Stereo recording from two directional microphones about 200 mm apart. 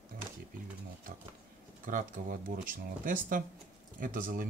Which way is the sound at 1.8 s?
40° right (ahead or behind).